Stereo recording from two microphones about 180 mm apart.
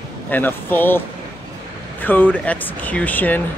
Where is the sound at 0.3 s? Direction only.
10° left (ahead or behind).